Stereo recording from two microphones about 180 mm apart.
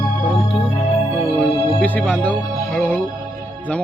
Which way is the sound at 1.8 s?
10° left (ahead or behind).